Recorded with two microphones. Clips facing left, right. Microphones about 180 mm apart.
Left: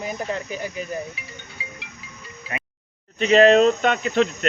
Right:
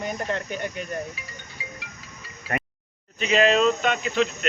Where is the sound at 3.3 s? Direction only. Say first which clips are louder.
Left 6 dB; 45° left (ahead or behind).